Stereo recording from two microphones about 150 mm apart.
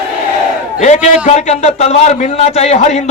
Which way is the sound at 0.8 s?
50° left (ahead or behind).